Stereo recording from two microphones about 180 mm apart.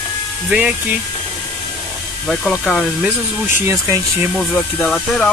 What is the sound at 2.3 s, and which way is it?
Speech, 5° left (ahead or behind).